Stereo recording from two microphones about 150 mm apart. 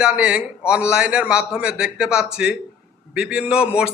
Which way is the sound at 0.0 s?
5° right (ahead or behind).